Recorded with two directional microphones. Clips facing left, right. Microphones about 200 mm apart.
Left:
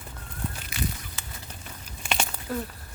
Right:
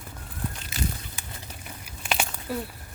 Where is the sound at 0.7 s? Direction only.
25° right (ahead or behind).